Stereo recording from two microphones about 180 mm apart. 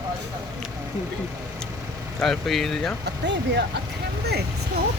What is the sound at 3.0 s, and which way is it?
Speech, 70° right (ahead or behind).